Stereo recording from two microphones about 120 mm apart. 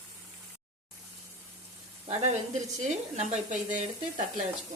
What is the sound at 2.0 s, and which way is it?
Speech, 70° right (ahead or behind).